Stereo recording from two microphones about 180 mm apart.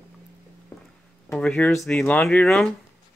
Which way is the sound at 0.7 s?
10° left (ahead or behind).